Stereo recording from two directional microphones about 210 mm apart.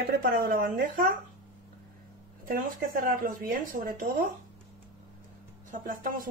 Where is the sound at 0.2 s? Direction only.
45° right (ahead or behind).